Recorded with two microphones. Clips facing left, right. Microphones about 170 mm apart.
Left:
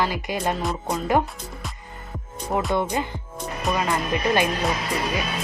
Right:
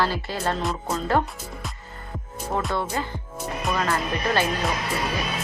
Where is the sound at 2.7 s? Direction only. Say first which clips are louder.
Left 3 dB; 20° left (ahead or behind).